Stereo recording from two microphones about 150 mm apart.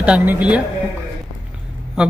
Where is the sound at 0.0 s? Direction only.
10° right (ahead or behind).